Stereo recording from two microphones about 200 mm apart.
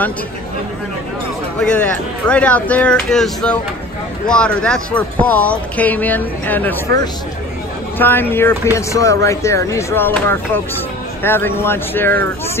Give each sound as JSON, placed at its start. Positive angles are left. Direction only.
{"t": 1.6, "sound": "speech", "side_deg": 5}
{"t": 8.0, "sound": "speech", "side_deg": 10}